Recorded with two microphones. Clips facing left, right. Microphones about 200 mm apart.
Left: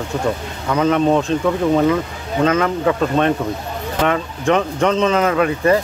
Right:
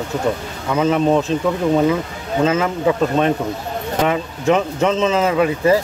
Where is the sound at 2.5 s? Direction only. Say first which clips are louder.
Left 2 dB; 20° right (ahead or behind).